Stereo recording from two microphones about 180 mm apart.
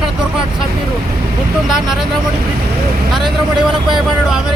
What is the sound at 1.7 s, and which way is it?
Speech, centre (ahead or behind).